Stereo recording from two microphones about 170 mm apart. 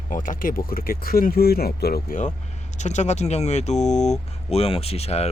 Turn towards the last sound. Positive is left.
turn(degrees=35)  # may be behind; listen again after turning